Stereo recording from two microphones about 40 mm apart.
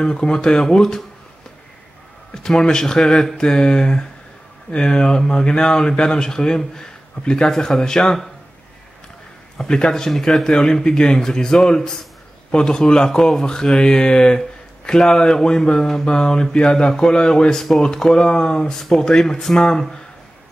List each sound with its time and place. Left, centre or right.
0.0 s speech: centre
2.3 s speech: centre
9.6 s speech: centre